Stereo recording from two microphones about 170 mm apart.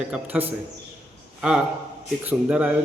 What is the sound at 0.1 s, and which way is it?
A man's voice, 10° right (ahead or behind).